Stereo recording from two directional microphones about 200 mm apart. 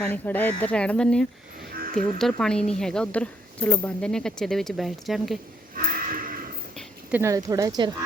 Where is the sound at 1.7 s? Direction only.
45° right (ahead or behind).